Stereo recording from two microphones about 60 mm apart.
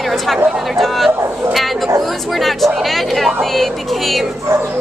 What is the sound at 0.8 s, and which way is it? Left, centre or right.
Speech, centre.